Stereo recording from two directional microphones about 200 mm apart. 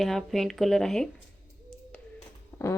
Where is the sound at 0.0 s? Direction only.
Centre (ahead or behind).